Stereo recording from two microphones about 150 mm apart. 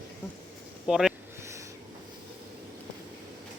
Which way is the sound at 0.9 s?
5° right (ahead or behind).